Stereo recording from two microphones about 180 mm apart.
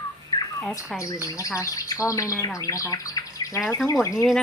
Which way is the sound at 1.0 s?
20° left (ahead or behind).